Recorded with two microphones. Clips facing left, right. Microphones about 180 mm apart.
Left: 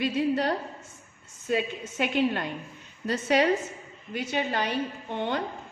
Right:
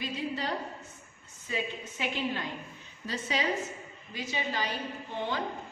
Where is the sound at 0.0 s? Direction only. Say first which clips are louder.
Left 9 dB; 65° left (ahead or behind).